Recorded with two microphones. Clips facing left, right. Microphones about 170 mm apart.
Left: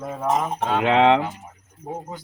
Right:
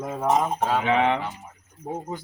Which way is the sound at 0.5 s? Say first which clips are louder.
Even; 5° right (ahead or behind).